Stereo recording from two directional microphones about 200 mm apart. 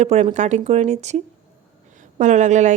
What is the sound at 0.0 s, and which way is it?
Speech, 35° right (ahead or behind).